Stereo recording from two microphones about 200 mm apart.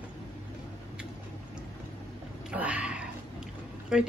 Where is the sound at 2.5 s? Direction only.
5° right (ahead or behind).